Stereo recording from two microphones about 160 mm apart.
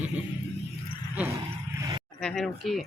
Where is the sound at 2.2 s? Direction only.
5° left (ahead or behind).